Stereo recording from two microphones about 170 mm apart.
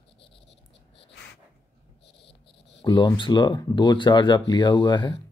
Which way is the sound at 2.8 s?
25° left (ahead or behind).